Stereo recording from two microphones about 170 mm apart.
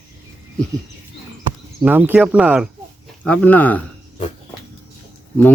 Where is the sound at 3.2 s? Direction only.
10° left (ahead or behind).